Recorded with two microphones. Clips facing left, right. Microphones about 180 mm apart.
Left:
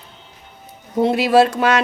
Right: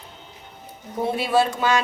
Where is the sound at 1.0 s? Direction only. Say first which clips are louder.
Left 7 dB; 80° left.